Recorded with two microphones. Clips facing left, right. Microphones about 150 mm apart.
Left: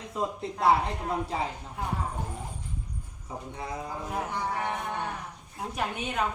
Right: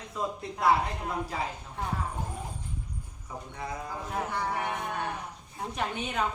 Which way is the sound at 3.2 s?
25° left (ahead or behind).